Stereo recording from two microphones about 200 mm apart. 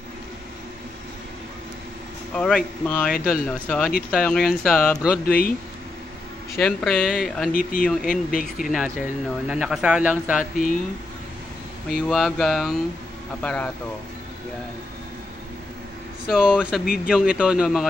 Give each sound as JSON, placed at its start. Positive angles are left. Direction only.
{"t": 2.3, "sound": "speech", "side_deg": 5}
{"t": 5.2, "sound": "speech", "side_deg": 45}
{"t": 6.5, "sound": "speech", "side_deg": 5}
{"t": 8.1, "sound": "speech", "side_deg": 45}
{"t": 8.5, "sound": "speech", "side_deg": -5}
{"t": 11.9, "sound": "speech", "side_deg": 0}
{"t": 16.3, "sound": "speech", "side_deg": -5}
{"t": 16.8, "sound": "speech", "side_deg": 50}
{"t": 17.1, "sound": "speech", "side_deg": -5}